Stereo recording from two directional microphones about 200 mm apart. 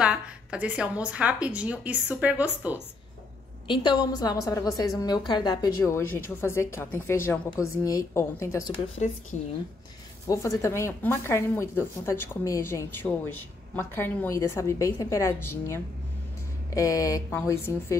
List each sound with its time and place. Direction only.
0.0 s a woman's voice: 5° right (ahead or behind)
3.6 s a woman's voice: 25° left (ahead or behind)
9.0 s speech: 35° left (ahead or behind)
10.2 s a woman's voice: 15° left (ahead or behind)